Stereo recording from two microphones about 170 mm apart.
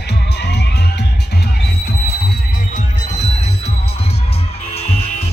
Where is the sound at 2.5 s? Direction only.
50° left (ahead or behind).